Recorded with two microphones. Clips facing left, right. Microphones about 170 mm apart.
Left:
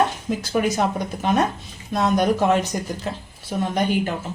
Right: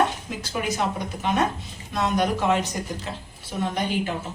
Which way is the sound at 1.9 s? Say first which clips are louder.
Left 4 dB; 40° left (ahead or behind).